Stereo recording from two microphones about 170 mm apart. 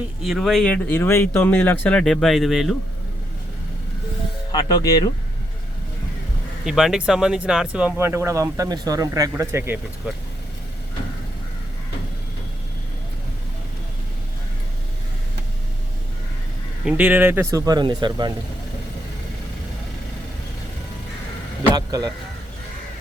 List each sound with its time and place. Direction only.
0.2 s speech: centre (ahead or behind)
4.5 s speech: 20° left (ahead or behind)
6.7 s speech: centre (ahead or behind)
16.8 s speech: 5° right (ahead or behind); by 18.3 s 25° right (ahead or behind)
21.8 s speech: 20° right (ahead or behind)